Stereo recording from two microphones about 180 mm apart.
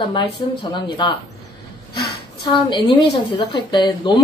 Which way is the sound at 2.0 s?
25° left (ahead or behind).